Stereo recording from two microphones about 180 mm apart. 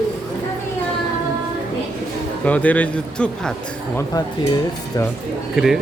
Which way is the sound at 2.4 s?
10° left (ahead or behind).